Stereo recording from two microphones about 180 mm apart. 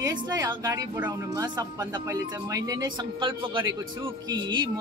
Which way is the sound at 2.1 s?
20° right (ahead or behind).